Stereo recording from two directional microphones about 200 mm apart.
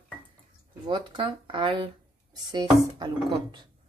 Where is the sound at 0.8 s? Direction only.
25° right (ahead or behind).